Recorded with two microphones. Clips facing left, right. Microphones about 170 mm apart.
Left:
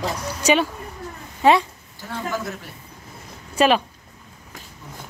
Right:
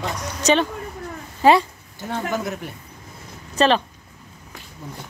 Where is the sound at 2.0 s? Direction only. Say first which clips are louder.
Right 5 dB; 20° right (ahead or behind).